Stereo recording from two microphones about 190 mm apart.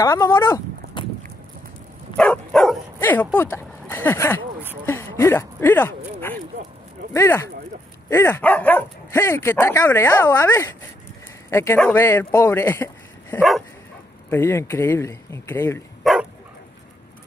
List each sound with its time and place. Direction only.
0.0 s speech: 15° left (ahead or behind)
1.0 s boat: 25° left (ahead or behind)
2.1 s dog: 5° left (ahead or behind)
3.0 s speech: 10° left (ahead or behind)
7.2 s speech: 10° left (ahead or behind)
13.4 s dog: centre (ahead or behind)
14.3 s speech: 15° left (ahead or behind)
16.0 s bow-wow: centre (ahead or behind)